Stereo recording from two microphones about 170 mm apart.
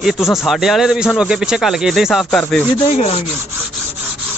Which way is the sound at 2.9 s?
40° left (ahead or behind).